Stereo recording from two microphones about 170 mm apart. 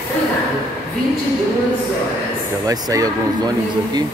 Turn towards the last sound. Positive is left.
turn(degrees=-20)  # may be behind; listen again after turning